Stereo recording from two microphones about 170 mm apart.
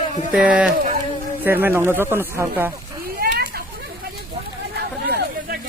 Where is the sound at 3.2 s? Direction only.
60° right (ahead or behind).